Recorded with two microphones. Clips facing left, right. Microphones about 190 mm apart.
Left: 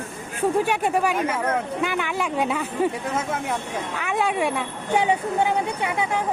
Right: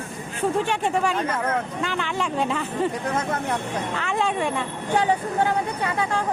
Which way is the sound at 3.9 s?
10° left (ahead or behind).